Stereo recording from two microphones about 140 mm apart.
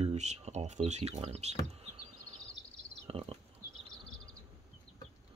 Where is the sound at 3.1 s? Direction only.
40° right (ahead or behind).